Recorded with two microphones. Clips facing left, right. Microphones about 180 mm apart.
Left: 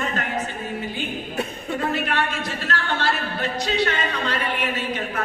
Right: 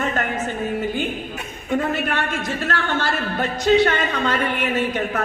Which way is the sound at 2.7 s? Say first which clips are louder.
Right 2 dB; 50° right (ahead or behind).